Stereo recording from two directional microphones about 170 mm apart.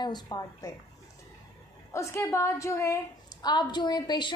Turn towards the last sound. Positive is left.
turn(degrees=25)  # may be behind; listen again after turning